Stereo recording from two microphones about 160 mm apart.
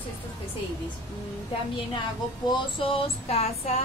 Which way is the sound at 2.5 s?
30° left (ahead or behind).